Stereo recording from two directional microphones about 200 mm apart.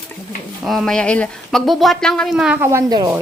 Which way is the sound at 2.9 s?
20° right (ahead or behind).